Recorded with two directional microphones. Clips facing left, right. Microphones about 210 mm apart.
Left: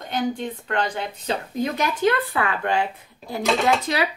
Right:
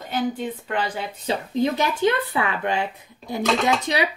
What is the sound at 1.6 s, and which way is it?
Speech, 25° right (ahead or behind).